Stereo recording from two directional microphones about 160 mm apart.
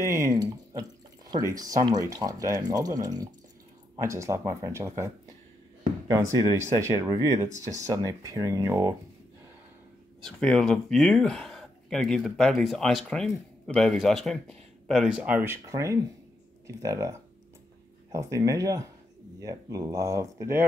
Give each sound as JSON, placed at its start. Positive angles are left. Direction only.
{"t": 0.0, "sound": "speech", "side_deg": -20}
{"t": 10.2, "sound": "speech", "side_deg": 5}